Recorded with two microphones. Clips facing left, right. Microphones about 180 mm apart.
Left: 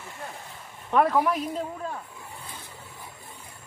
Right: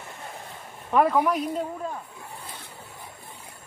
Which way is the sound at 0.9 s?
Centre (ahead or behind).